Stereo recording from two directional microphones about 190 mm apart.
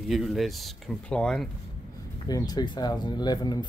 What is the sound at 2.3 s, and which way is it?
Speech, 20° left (ahead or behind).